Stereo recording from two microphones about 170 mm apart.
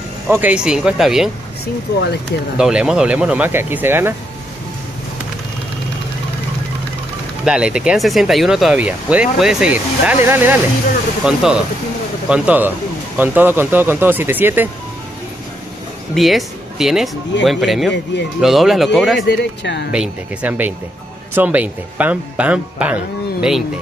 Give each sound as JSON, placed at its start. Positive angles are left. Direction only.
{"t": 0.3, "sound": "speech", "side_deg": -10}
{"t": 2.5, "sound": "speech", "side_deg": -5}
{"t": 7.4, "sound": "speech", "side_deg": -5}
{"t": 16.2, "sound": "speech", "side_deg": 0}
{"t": 19.1, "sound": "speech", "side_deg": 90}
{"t": 19.9, "sound": "speech", "side_deg": -10}